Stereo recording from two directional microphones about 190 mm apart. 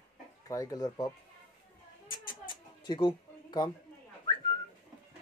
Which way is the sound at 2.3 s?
25° left (ahead or behind).